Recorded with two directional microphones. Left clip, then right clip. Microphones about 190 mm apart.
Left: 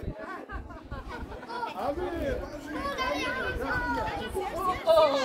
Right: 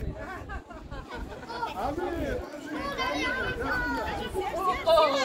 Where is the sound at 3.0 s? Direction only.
25° left (ahead or behind).